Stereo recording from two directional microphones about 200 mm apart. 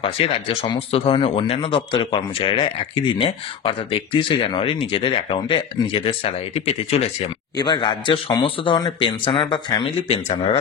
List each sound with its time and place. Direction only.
0.0 s speech: 30° left (ahead or behind)